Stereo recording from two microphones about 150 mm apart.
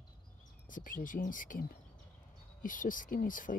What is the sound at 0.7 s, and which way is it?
Speech, 65° left (ahead or behind).